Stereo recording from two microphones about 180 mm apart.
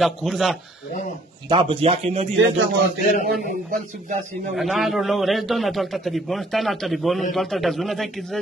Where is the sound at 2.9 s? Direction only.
50° left (ahead or behind).